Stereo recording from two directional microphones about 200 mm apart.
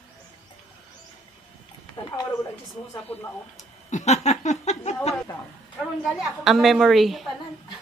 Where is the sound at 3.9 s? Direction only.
35° left (ahead or behind).